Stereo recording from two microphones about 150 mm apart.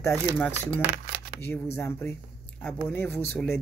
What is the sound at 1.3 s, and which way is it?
Speech, 15° left (ahead or behind).